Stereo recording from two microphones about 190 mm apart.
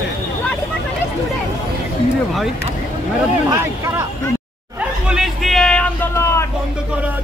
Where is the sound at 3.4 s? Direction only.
15° right (ahead or behind).